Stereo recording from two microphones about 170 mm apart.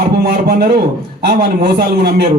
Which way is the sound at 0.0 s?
65° right (ahead or behind).